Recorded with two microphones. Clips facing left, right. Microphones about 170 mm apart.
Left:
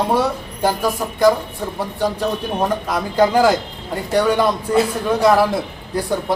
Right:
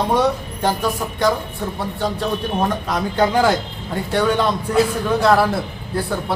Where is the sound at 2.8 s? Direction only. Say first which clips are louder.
Left 2 dB; 10° left (ahead or behind).